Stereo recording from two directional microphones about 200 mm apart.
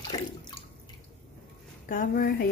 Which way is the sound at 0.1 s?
20° left (ahead or behind).